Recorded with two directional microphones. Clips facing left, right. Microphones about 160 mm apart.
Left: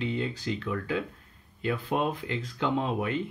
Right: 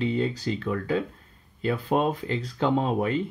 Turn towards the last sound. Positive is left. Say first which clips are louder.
# right 4 dB
turn(degrees=-35)  # may be behind; listen again after turning